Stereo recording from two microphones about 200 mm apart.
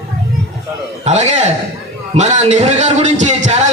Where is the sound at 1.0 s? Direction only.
35° right (ahead or behind).